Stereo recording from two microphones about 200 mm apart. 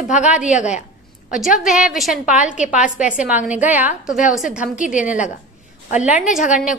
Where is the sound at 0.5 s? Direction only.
35° left (ahead or behind).